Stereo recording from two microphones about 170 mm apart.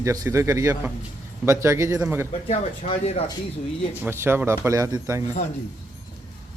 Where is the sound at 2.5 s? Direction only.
35° left (ahead or behind).